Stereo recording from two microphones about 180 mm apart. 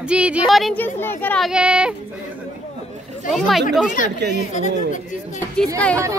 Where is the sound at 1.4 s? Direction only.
5° right (ahead or behind).